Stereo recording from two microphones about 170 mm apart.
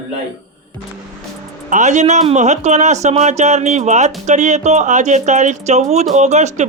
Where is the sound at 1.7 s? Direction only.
45° right (ahead or behind).